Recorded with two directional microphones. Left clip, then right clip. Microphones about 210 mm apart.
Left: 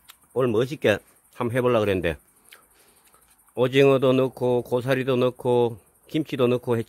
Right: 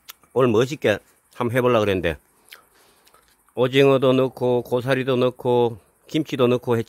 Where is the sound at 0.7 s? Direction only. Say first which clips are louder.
Right 1 dB; centre (ahead or behind).